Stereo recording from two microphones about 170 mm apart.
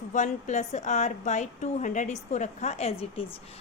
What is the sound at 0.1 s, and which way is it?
A woman's voice, 45° left (ahead or behind).